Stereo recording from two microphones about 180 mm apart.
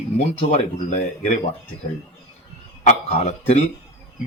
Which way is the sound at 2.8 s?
40° left (ahead or behind).